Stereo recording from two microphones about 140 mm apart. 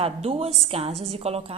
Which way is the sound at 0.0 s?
45° right (ahead or behind).